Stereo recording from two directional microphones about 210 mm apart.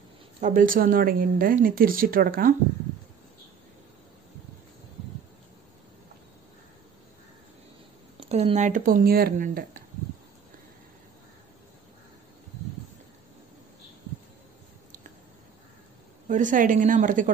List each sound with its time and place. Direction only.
0.4 s speech: 40° right (ahead or behind)
8.2 s speech: 30° right (ahead or behind)
16.3 s speech: 35° right (ahead or behind)